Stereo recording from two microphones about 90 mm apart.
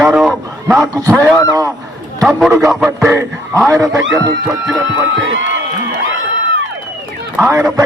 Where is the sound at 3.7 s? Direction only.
35° right (ahead or behind).